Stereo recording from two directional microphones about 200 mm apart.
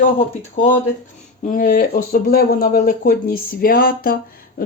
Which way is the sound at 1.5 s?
45° left (ahead or behind).